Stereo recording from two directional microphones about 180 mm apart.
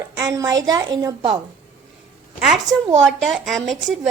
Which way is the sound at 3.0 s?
Centre (ahead or behind).